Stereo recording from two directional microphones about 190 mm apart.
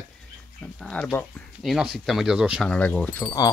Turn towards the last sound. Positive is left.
turn(degrees=5)  # may be behind; listen again after turning